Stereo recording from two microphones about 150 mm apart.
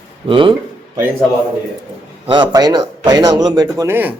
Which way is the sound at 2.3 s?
30° right (ahead or behind).